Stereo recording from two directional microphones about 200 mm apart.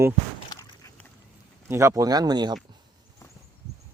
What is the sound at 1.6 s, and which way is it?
Speech, 15° right (ahead or behind).